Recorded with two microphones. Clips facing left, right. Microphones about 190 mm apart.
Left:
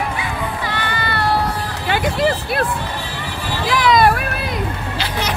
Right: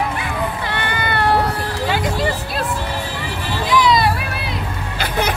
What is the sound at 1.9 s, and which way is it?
Music, 60° left (ahead or behind).